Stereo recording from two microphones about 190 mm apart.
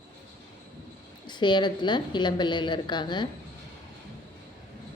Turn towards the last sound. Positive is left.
turn(degrees=25)  # may be behind; listen again after turning